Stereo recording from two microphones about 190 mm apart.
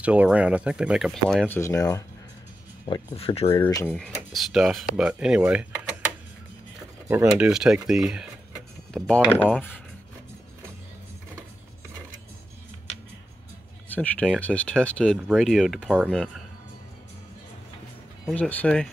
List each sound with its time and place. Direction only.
0.0 s speech: 5° right (ahead or behind)
1.5 s speech: 15° left (ahead or behind)
2.9 s speech: 25° left (ahead or behind)
3.6 s speech: 10° left (ahead or behind)
13.8 s speech: 10° left (ahead or behind)
18.2 s speech: 5° left (ahead or behind)